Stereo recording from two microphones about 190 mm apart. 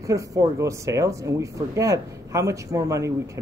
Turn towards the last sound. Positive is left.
turn(degrees=-15)  # may be behind; listen again after turning